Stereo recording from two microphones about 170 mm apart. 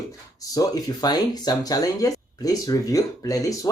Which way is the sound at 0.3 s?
20° left (ahead or behind).